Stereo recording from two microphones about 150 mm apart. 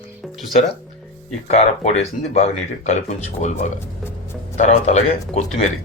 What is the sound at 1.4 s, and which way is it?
Speech, 45° left (ahead or behind).